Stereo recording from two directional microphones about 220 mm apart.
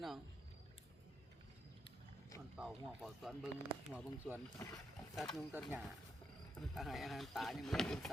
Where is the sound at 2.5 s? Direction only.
Centre (ahead or behind).